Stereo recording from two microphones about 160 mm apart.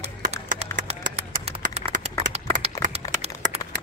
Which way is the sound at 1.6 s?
55° right (ahead or behind).